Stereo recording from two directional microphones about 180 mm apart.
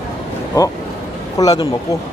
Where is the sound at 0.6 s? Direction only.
20° left (ahead or behind).